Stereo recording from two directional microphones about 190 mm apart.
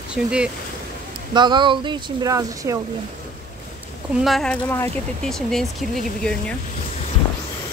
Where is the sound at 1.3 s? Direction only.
25° right (ahead or behind).